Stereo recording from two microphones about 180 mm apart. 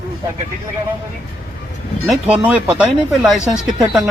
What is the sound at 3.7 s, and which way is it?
Speech, 20° right (ahead or behind).